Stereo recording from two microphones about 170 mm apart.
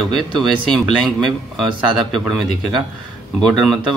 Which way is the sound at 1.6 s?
Centre (ahead or behind).